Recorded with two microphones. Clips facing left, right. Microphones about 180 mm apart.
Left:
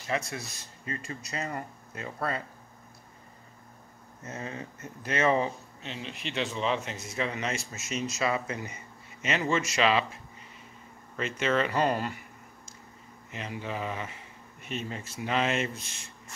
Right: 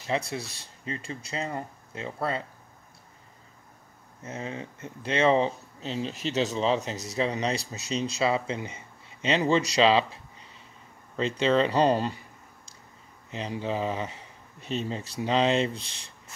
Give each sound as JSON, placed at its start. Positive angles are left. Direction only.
{"t": 0.1, "sound": "speech", "side_deg": -30}
{"t": 4.2, "sound": "speech", "side_deg": -15}
{"t": 11.1, "sound": "speech", "side_deg": -30}
{"t": 13.3, "sound": "speech", "side_deg": -30}